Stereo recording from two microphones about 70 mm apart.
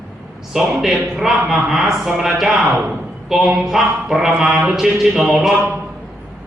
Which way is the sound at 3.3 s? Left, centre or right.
Centre.